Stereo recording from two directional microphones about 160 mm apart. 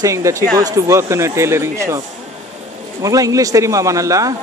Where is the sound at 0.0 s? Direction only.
20° right (ahead or behind).